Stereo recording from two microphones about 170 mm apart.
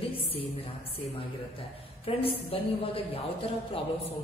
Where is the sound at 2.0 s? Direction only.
35° left (ahead or behind).